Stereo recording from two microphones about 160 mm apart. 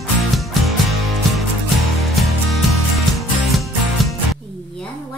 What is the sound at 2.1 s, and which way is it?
Music, centre (ahead or behind).